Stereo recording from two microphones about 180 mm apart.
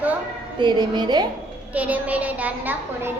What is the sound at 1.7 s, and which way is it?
A child's voice, 10° right (ahead or behind).